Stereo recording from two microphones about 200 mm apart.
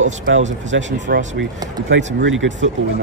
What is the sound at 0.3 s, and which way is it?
Speech, 65° right (ahead or behind).